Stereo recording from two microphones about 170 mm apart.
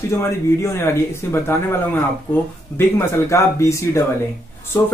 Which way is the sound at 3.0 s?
15° left (ahead or behind).